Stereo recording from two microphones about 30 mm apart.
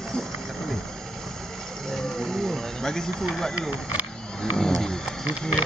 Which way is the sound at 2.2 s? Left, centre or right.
Centre.